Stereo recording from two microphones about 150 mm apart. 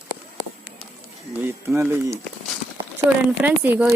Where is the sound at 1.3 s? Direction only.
15° right (ahead or behind).